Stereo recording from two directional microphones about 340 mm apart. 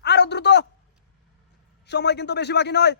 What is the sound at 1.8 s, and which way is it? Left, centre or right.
Speech, left.